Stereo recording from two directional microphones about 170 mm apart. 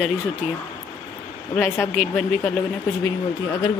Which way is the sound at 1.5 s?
10° left (ahead or behind).